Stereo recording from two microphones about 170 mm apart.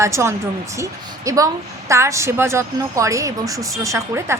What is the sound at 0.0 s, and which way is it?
A woman's voice, 15° right (ahead or behind).